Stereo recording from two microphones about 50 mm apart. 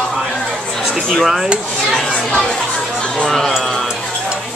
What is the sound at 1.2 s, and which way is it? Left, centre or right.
Speech, centre.